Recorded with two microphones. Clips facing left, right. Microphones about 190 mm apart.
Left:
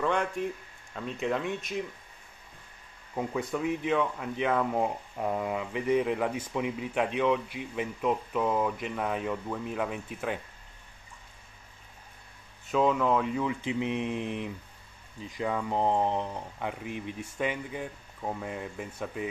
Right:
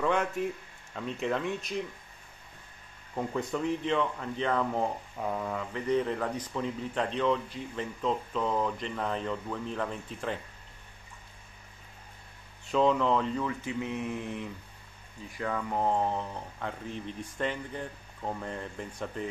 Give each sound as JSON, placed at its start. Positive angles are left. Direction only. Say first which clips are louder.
{"t": 0.0, "sound": "speech", "louder": "even", "side_deg": -5}
{"t": 3.2, "sound": "speech", "louder": "left 1 dB", "side_deg": 0}
{"t": 12.6, "sound": "speech", "louder": "even", "side_deg": 5}